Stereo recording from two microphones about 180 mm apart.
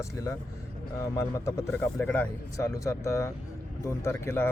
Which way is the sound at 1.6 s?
15° left (ahead or behind).